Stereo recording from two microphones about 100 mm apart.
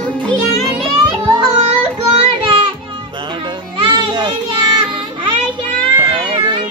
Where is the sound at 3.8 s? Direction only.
50° right (ahead or behind).